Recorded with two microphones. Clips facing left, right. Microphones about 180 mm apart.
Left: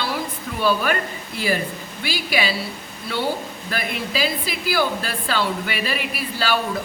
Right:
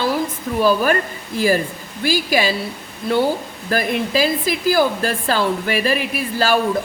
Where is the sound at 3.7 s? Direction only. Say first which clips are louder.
Right 8 dB; 45° right (ahead or behind).